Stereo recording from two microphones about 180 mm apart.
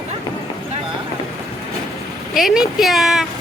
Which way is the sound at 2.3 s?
Centre (ahead or behind).